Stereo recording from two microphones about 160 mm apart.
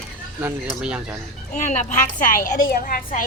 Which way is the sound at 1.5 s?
45° left (ahead or behind).